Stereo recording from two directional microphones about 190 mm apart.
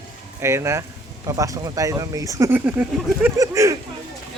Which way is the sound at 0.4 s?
15° right (ahead or behind).